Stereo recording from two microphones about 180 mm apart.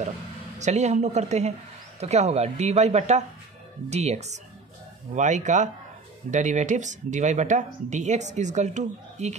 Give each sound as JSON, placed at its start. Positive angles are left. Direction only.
{"t": 0.6, "sound": "speech", "side_deg": -40}